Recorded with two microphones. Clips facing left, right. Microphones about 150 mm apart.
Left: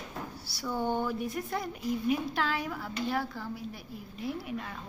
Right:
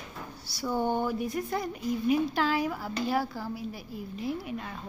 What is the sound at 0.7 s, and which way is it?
Speech, 15° right (ahead or behind).